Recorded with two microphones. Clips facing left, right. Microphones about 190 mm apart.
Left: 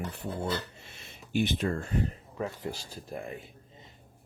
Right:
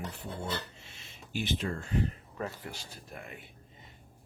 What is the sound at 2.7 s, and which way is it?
Speech, 30° left (ahead or behind).